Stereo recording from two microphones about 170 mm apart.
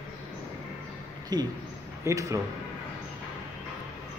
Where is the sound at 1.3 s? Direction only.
25° right (ahead or behind).